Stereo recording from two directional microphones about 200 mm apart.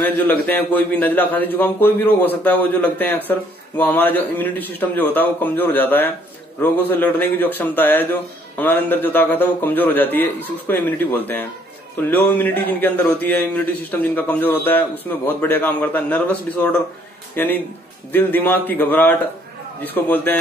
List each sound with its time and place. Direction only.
0.0 s speech: 10° left (ahead or behind)